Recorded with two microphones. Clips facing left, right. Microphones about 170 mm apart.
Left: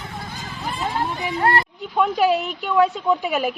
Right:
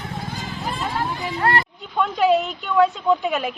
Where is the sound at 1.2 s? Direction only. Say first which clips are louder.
Left 1 dB; 20° left (ahead or behind).